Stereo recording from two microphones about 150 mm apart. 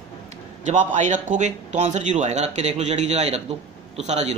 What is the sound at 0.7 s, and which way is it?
A man's voice, 55° right (ahead or behind).